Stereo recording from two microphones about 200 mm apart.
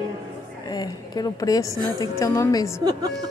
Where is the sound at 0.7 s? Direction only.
20° left (ahead or behind).